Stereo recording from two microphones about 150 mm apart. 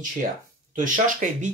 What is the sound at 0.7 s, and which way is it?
Speech, 60° right (ahead or behind).